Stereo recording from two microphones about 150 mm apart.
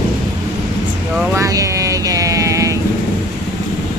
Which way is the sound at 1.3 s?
20° right (ahead or behind).